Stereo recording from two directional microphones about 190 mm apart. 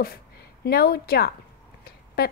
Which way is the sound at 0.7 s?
55° left (ahead or behind).